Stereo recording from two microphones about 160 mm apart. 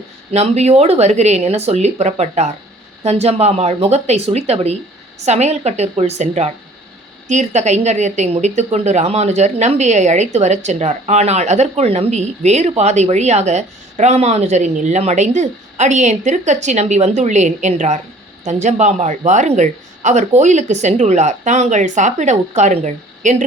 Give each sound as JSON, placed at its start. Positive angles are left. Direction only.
{"t": 0.3, "sound": "a woman's voice", "side_deg": -40}